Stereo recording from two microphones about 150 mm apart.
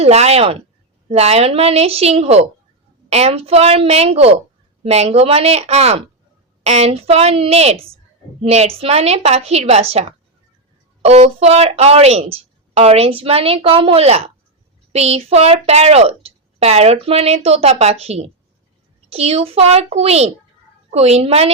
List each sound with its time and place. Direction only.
0.0 s speech: 45° right (ahead or behind)